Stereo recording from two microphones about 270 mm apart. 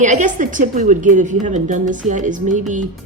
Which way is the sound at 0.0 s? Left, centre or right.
Right.